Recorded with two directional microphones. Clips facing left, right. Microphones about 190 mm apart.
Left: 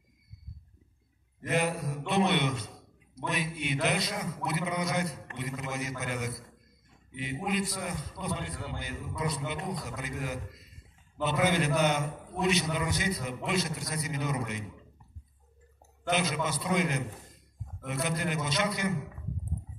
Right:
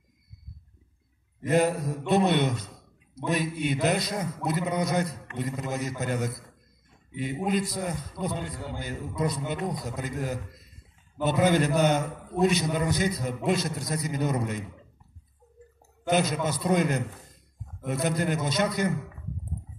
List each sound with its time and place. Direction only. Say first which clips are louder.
1.5 s a man's voice: right 6 dB; 40° right (ahead or behind)
16.1 s a man's voice: right 5 dB; 45° right (ahead or behind)